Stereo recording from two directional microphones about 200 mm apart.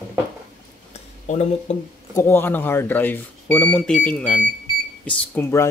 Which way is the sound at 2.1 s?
10° left (ahead or behind).